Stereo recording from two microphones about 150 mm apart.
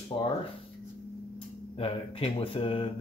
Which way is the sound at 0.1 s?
35° left (ahead or behind).